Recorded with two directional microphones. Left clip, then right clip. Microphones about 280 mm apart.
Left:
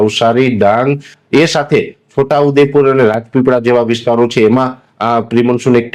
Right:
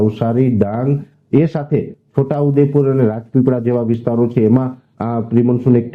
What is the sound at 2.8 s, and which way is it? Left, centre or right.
Speech, centre.